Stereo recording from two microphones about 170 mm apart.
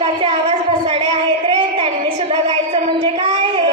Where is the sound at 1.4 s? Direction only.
30° right (ahead or behind).